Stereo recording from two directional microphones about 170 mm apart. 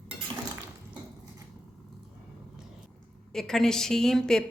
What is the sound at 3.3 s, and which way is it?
Speech, centre (ahead or behind).